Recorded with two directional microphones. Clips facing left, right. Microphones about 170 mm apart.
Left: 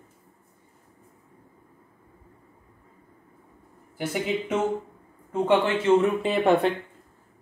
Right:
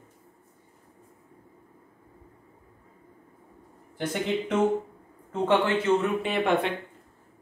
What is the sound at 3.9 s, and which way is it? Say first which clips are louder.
Speech: left 1 dB; 5° left (ahead or behind).